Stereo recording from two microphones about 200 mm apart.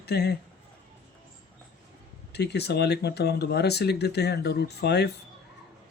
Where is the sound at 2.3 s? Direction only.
55° left (ahead or behind).